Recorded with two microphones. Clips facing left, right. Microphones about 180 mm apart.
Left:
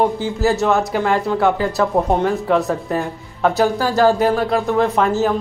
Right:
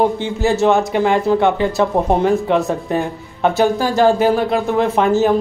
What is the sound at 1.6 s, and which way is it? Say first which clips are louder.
Speech: right 1 dB; 25° right (ahead or behind).